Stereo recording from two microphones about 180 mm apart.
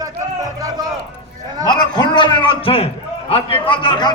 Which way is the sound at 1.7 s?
25° left (ahead or behind).